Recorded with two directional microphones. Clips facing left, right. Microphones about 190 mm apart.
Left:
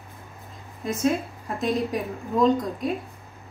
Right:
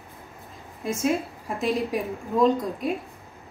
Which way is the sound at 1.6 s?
5° right (ahead or behind).